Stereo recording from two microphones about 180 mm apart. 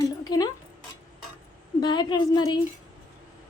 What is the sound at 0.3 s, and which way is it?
Speech, 20° left (ahead or behind).